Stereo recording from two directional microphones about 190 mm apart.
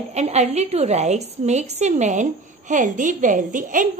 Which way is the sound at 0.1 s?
35° right (ahead or behind).